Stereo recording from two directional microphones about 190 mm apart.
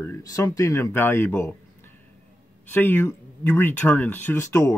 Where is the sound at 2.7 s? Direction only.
10° left (ahead or behind).